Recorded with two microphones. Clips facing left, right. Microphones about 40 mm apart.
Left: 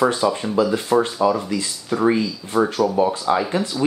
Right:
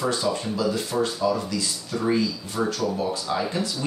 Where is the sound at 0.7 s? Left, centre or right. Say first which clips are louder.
Left 6 dB; left.